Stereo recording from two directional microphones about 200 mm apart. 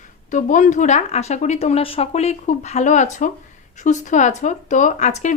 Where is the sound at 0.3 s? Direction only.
40° left (ahead or behind).